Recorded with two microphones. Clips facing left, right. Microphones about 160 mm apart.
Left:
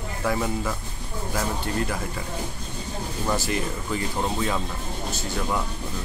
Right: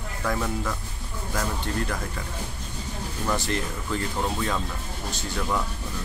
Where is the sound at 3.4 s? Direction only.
5° left (ahead or behind).